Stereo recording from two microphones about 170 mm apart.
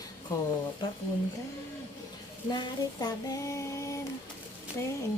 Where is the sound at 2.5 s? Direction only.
25° left (ahead or behind).